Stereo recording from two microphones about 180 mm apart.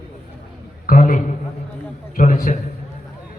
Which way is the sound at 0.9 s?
50° left (ahead or behind).